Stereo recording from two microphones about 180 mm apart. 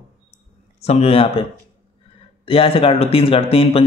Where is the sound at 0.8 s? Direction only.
35° left (ahead or behind).